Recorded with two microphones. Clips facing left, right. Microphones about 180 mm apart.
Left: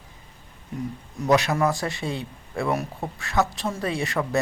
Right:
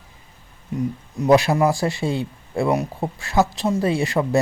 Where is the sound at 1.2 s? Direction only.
30° right (ahead or behind).